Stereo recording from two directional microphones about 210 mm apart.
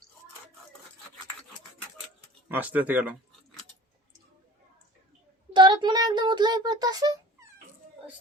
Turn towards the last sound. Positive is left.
turn(degrees=-15)  # may be behind; listen again after turning